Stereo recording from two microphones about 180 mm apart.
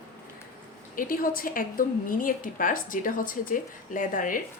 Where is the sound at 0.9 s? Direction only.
50° left (ahead or behind).